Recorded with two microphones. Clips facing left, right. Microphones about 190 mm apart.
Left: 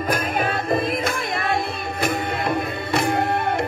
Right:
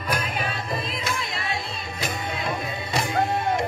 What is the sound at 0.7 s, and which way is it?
Music, 55° left (ahead or behind).